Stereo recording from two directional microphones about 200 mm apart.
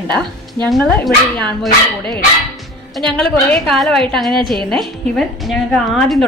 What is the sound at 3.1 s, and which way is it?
A woman's voice, 5° left (ahead or behind).